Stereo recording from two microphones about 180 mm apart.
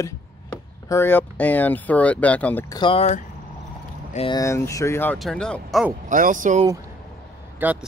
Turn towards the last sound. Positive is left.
turn(degrees=-10)  # may be behind; listen again after turning